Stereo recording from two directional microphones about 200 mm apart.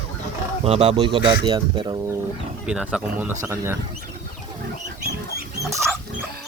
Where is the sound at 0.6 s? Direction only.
30° right (ahead or behind).